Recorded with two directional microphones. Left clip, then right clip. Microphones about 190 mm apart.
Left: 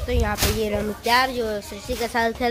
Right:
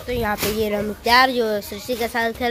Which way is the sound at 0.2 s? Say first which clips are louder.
Right 3 dB; 15° right (ahead or behind).